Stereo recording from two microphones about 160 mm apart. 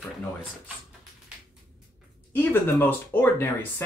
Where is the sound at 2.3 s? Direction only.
10° left (ahead or behind).